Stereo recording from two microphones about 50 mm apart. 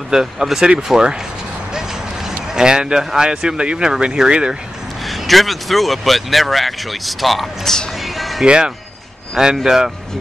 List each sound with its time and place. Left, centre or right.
0.1 s speech: centre
5.0 s speech: centre
8.0 s a sound: centre
8.5 s speech: centre
9.6 s speech: centre